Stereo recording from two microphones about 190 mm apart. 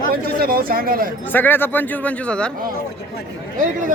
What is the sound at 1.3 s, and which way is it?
Speech, 10° left (ahead or behind).